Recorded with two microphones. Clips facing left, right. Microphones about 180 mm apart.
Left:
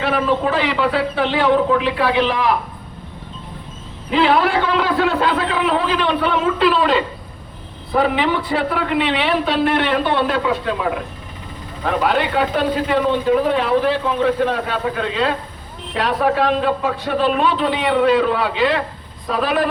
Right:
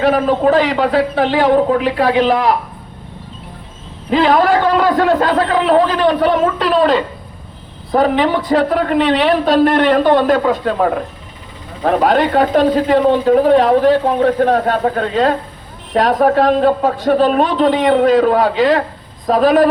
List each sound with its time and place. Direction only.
0.0 s a man's voice: 45° right (ahead or behind)
4.1 s a man's voice: 40° right (ahead or behind)